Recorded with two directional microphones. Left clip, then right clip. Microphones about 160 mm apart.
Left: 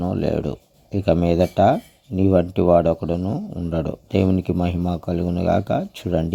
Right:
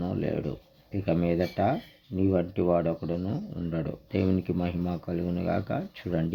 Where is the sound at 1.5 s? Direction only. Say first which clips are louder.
Left 11 dB; 45° left (ahead or behind).